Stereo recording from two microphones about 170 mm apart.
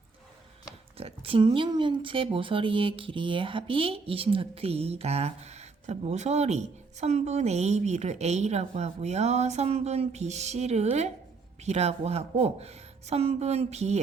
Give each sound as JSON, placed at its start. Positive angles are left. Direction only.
{"t": 0.9, "sound": "speech", "side_deg": -35}